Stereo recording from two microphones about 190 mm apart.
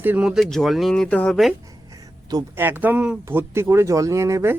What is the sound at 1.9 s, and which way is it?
Speech, 20° right (ahead or behind).